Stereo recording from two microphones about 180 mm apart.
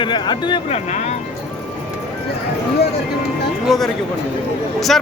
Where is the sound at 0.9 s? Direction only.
40° left (ahead or behind).